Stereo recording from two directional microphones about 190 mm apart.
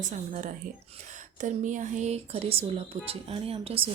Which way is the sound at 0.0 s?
40° right (ahead or behind).